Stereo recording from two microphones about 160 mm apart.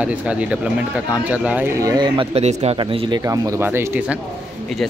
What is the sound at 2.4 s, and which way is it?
Speech, 40° right (ahead or behind).